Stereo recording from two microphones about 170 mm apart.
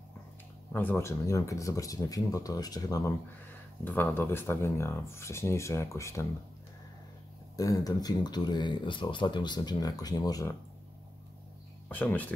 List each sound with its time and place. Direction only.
0.7 s speech: 15° left (ahead or behind)
3.8 s speech: 10° left (ahead or behind)
7.5 s speech: 20° left (ahead or behind)
11.9 s speech: 10° left (ahead or behind)